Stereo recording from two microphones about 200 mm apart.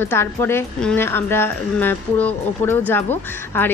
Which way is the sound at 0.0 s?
10° left (ahead or behind).